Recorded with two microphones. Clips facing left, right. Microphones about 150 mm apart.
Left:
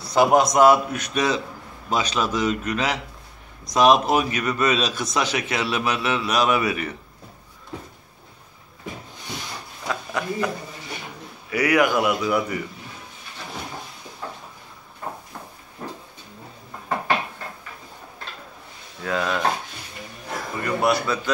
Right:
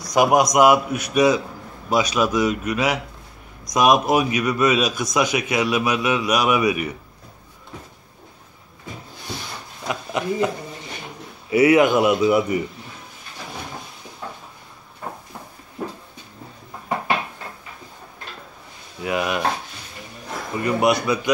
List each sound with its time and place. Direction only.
0.0 s a man's voice: 15° right (ahead or behind)
9.8 s a sound: 20° right (ahead or behind)
11.5 s a man's voice: 25° right (ahead or behind)
19.0 s a man's voice: 15° right (ahead or behind)
20.6 s a man's voice: 20° right (ahead or behind)